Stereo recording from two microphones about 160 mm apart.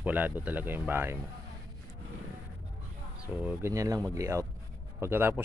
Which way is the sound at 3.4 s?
20° right (ahead or behind).